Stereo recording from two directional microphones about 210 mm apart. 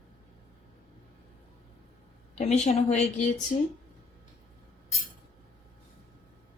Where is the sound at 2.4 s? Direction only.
35° left (ahead or behind).